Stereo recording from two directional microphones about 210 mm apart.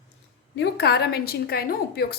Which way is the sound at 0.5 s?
50° left (ahead or behind).